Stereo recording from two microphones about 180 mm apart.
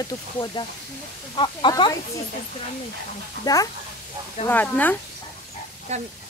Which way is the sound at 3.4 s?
20° left (ahead or behind).